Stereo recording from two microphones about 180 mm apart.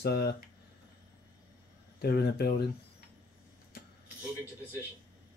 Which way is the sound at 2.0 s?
60° left (ahead or behind).